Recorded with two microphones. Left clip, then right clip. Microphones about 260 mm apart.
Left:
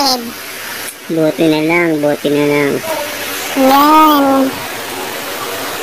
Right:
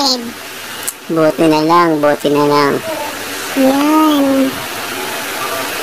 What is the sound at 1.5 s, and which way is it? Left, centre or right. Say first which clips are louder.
Speech: right 2 dB; right.